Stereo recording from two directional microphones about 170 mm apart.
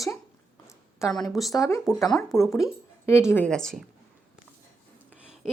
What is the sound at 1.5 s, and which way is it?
Speech, 20° left (ahead or behind).